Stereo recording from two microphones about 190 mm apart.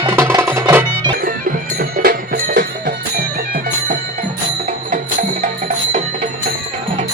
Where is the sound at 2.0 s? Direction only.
50° right (ahead or behind).